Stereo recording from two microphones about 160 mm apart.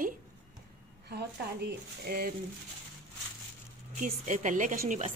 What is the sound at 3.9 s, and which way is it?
A woman's voice, 50° right (ahead or behind).